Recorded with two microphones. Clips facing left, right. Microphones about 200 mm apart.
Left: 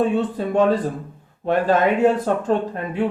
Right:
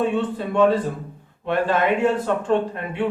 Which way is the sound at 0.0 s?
40° left (ahead or behind).